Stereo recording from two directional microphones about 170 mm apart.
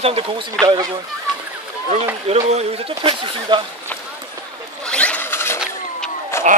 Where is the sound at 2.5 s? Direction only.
40° right (ahead or behind).